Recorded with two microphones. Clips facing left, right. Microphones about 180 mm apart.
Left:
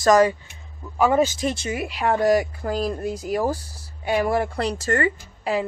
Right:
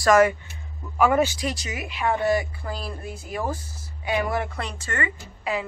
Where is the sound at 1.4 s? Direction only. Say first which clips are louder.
Left 5 dB; 35° left (ahead or behind).